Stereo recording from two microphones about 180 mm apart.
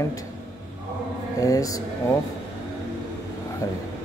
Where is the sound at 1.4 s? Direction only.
20° left (ahead or behind).